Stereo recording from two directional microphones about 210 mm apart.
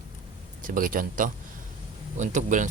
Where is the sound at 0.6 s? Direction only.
40° right (ahead or behind).